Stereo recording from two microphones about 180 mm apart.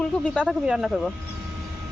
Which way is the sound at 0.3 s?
5° right (ahead or behind).